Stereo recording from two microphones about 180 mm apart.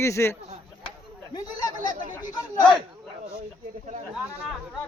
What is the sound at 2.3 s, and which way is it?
Chatter, 25° left (ahead or behind).